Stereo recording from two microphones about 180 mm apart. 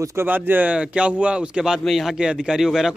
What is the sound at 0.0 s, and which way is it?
Speech, 15° right (ahead or behind).